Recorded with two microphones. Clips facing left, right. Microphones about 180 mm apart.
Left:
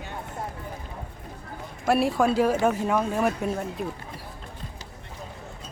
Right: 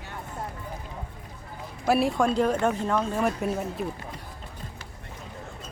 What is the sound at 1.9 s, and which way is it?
Speech, centre (ahead or behind).